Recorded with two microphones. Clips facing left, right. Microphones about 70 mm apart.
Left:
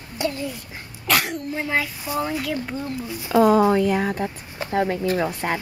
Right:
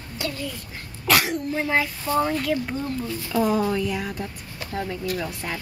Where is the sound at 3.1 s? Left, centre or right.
Centre.